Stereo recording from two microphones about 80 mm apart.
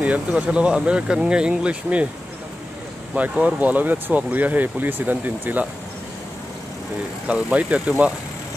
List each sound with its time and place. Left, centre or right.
0.0 s speech: centre
3.2 s speech: centre
7.2 s speech: centre